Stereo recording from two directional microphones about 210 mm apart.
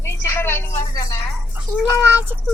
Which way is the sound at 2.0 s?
10° right (ahead or behind).